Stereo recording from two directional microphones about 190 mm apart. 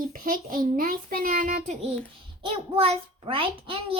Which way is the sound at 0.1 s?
45° right (ahead or behind).